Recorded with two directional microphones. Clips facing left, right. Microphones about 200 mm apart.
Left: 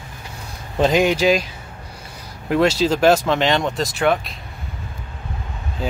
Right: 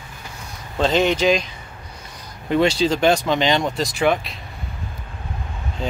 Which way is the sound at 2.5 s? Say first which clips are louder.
Left 1 dB; centre (ahead or behind).